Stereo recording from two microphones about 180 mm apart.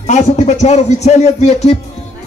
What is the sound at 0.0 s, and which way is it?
A man's voice, 40° left (ahead or behind).